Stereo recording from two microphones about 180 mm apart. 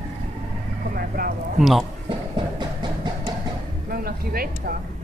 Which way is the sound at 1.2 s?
55° right (ahead or behind).